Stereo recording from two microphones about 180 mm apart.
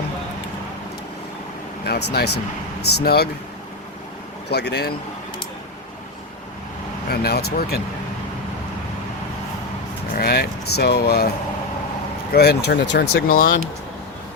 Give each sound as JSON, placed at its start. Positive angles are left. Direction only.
{"t": 1.8, "sound": "speech", "side_deg": 60}
{"t": 4.4, "sound": "speech", "side_deg": 70}
{"t": 7.1, "sound": "speech", "side_deg": 60}
{"t": 10.2, "sound": "speech", "side_deg": 55}
{"t": 12.3, "sound": "speech", "side_deg": 65}